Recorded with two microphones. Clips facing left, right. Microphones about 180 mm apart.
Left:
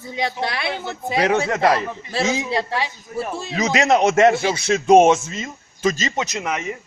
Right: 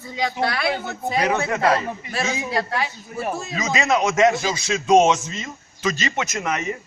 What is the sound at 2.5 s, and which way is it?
A man's voice, 30° left (ahead or behind).